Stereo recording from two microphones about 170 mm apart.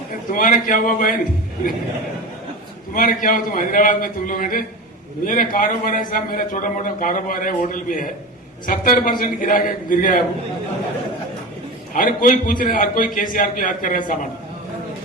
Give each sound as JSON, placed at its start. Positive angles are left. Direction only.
{"t": 0.3, "sound": "a man's voice", "side_deg": 50}
{"t": 2.9, "sound": "a man's voice", "side_deg": 55}
{"t": 11.9, "sound": "a man's voice", "side_deg": 55}